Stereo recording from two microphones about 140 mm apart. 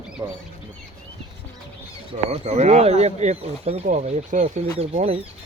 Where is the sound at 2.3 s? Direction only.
50° right (ahead or behind).